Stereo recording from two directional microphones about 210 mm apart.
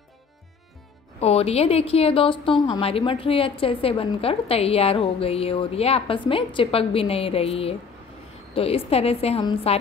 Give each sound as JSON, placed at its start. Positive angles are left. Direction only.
{"t": 1.2, "sound": "a woman's voice", "side_deg": 30}